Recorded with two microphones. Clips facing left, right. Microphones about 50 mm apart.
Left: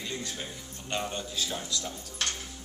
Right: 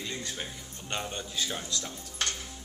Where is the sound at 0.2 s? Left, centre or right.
Right.